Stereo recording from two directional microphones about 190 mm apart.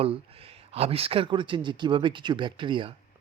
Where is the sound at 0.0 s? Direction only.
30° right (ahead or behind).